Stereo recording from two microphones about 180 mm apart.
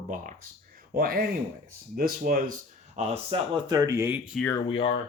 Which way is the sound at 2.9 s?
35° right (ahead or behind).